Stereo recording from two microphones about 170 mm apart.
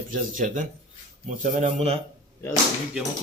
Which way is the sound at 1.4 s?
40° right (ahead or behind).